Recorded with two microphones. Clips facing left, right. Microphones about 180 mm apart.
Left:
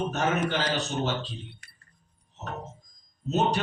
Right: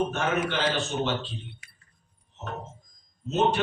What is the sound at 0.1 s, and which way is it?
A man's voice, 40° left (ahead or behind).